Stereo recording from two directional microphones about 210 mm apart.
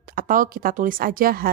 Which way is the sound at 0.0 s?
45° right (ahead or behind).